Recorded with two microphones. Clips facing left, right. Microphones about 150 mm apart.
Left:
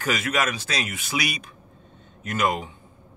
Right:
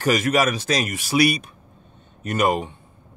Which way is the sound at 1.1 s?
40° right (ahead or behind).